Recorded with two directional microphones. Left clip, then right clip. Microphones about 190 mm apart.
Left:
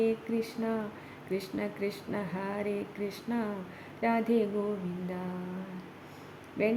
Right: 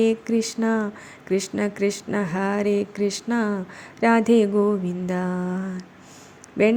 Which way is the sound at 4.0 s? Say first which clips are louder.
Right 11 dB; 30° right (ahead or behind).